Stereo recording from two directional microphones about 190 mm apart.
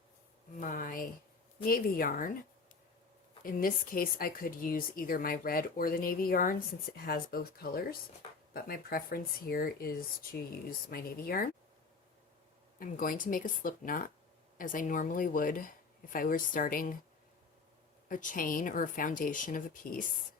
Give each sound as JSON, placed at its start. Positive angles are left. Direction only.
{"t": 0.6, "sound": "speech", "side_deg": 45}
{"t": 3.4, "sound": "speech", "side_deg": 50}
{"t": 12.8, "sound": "speech", "side_deg": 45}
{"t": 18.1, "sound": "speech", "side_deg": 45}